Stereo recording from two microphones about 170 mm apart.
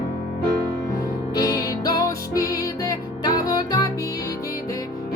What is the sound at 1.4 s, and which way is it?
Music, 20° left (ahead or behind).